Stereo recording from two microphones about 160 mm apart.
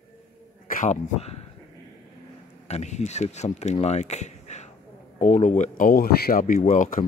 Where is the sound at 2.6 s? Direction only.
45° left (ahead or behind).